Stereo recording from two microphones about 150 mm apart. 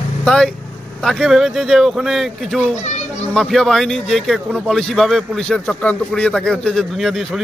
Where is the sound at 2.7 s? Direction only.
50° left (ahead or behind).